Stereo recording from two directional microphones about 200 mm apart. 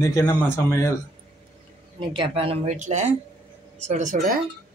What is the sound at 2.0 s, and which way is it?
Speech, 25° right (ahead or behind).